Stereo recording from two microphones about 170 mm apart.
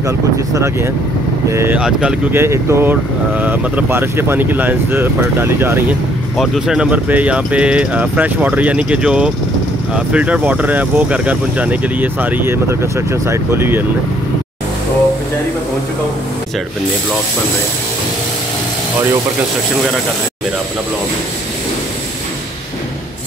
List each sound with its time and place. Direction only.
1.5 s speech: 15° right (ahead or behind)
1.8 s speech: 5° right (ahead or behind)
6.3 s speech: centre (ahead or behind)